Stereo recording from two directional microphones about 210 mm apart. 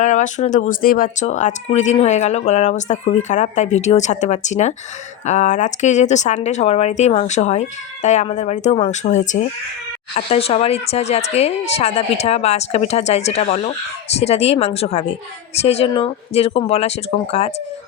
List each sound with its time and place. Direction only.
0.0 s speech: 35° left (ahead or behind)